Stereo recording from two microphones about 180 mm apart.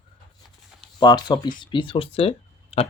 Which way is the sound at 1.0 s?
25° left (ahead or behind).